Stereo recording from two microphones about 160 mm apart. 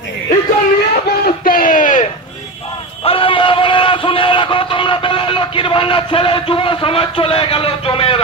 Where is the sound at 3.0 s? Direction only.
35° left (ahead or behind).